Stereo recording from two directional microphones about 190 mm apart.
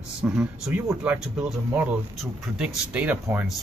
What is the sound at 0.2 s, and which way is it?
Speech, 5° right (ahead or behind).